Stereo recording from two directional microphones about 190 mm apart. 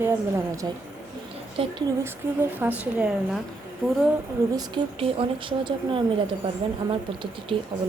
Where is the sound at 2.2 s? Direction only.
10° right (ahead or behind).